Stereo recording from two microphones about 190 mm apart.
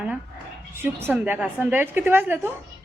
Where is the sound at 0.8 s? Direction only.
10° right (ahead or behind).